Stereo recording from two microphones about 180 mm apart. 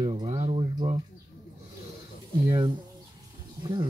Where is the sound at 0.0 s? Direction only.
30° right (ahead or behind).